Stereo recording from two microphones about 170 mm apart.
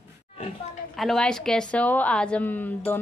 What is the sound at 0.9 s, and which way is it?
A woman's voice, centre (ahead or behind).